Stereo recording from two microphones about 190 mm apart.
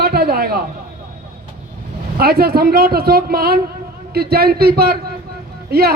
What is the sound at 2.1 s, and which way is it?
A man's voice, 55° right (ahead or behind).